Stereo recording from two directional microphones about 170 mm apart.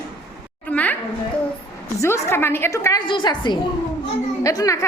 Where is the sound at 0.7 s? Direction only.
10° left (ahead or behind).